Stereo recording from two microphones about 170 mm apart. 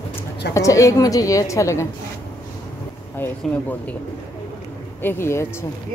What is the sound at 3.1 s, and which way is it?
Speech, 10° left (ahead or behind).